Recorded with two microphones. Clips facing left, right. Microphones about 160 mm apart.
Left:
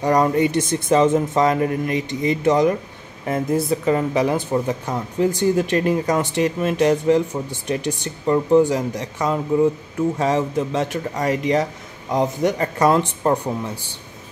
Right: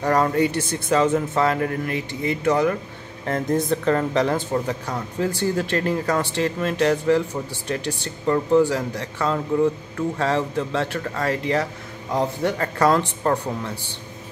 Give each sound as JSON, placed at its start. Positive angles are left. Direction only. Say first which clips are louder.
{"t": 0.0, "sound": "speech", "louder": "left 2 dB", "side_deg": 15}
{"t": 3.3, "sound": "speech", "louder": "left 1 dB", "side_deg": 10}